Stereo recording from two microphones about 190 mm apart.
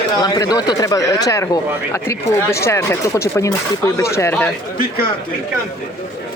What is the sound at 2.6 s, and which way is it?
Speech, 15° left (ahead or behind).